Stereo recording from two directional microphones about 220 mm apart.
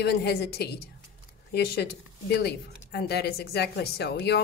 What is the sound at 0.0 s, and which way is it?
A woman's voice, 50° left (ahead or behind).